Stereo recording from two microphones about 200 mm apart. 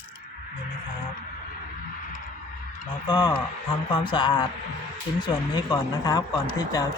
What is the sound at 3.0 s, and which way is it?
Speech, 20° left (ahead or behind).